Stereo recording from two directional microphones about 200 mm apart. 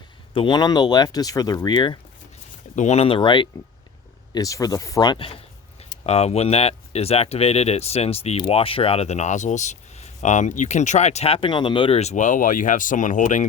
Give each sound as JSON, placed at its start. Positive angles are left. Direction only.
{"t": 0.3, "sound": "speech", "side_deg": 20}
{"t": 2.7, "sound": "speech", "side_deg": 35}